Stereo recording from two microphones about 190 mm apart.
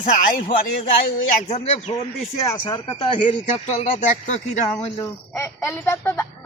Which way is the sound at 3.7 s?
40° left (ahead or behind).